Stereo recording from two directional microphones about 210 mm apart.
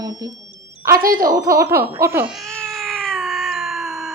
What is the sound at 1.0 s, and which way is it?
Speech, 40° right (ahead or behind).